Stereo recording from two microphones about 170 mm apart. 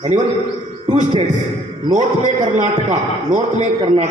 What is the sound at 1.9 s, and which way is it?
A man's voice, 45° right (ahead or behind).